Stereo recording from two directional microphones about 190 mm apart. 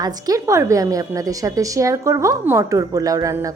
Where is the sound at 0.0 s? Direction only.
20° right (ahead or behind).